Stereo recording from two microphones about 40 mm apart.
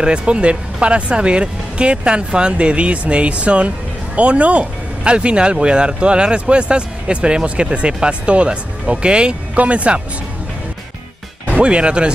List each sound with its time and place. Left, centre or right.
0.0 s speech: right
11.6 s speech: right